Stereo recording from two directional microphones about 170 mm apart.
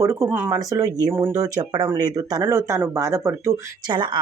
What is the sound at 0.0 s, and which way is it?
Speech, 15° right (ahead or behind).